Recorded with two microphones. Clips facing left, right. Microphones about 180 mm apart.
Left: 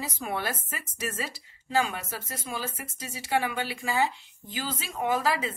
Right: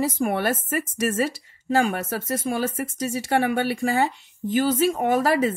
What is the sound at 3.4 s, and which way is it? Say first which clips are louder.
A woman's voice: right 10 dB; 60° right (ahead or behind).